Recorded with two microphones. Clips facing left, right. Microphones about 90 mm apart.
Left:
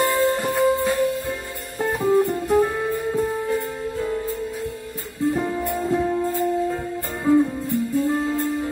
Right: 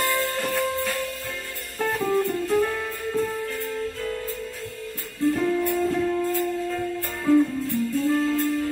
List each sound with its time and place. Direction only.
0.0 s music: 20° left (ahead or behind)
5.2 s music: 20° left (ahead or behind)